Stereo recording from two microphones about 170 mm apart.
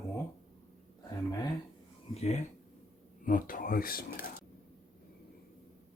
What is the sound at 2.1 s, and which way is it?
Speech, 40° left (ahead or behind).